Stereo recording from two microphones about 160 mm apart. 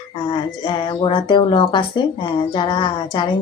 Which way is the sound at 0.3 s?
30° left (ahead or behind).